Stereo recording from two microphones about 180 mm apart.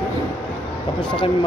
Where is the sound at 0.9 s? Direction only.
30° left (ahead or behind).